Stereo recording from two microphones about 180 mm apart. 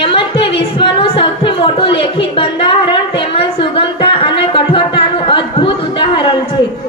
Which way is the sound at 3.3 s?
30° left (ahead or behind).